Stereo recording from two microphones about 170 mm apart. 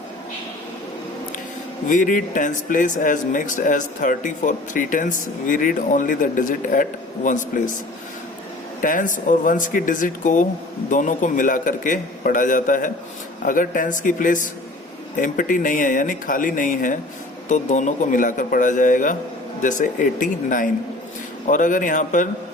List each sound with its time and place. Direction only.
1.9 s speech: 50° left (ahead or behind)
8.8 s speech: 50° left (ahead or behind)